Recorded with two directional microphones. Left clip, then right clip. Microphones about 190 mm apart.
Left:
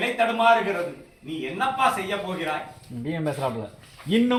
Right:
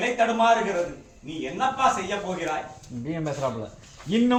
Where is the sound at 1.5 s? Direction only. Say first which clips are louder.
Even; centre (ahead or behind).